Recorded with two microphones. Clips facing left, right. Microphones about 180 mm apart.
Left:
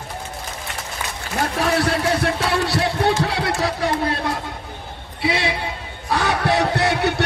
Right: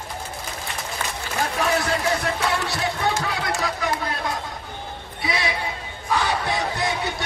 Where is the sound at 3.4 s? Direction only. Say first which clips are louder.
Left 4 dB; 30° left (ahead or behind).